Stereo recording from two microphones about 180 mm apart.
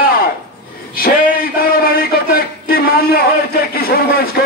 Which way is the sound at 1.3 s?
55° left (ahead or behind).